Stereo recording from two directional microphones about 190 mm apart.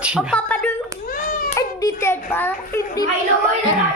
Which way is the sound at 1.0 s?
50° left (ahead or behind).